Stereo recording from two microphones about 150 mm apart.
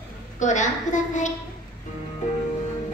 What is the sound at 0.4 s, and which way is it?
Speech, 55° left (ahead or behind).